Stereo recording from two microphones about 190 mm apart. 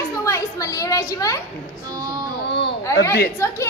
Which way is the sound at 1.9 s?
20° right (ahead or behind).